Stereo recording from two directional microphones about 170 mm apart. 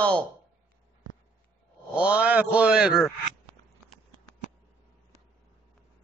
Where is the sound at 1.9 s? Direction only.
5° right (ahead or behind).